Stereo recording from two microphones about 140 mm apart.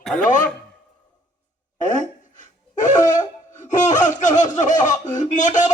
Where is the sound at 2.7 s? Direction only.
65° left (ahead or behind).